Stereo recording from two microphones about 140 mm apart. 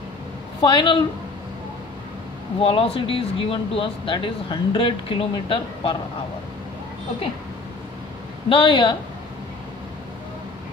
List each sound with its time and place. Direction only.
0.6 s speech: 35° left (ahead or behind)
2.6 s speech: 40° left (ahead or behind)
8.5 s speech: 35° left (ahead or behind)